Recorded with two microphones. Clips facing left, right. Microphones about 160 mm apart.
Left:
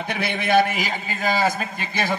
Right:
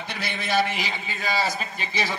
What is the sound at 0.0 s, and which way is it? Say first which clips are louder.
A man's voice: left 6 dB; 55° left (ahead or behind).